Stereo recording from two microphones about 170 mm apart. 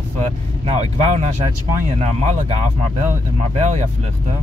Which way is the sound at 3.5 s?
45° right (ahead or behind).